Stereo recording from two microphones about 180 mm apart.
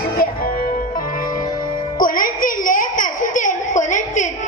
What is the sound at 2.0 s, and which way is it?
Baby cry, 50° left (ahead or behind).